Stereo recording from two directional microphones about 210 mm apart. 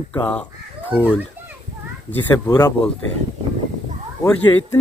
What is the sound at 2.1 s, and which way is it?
Speech, 15° left (ahead or behind).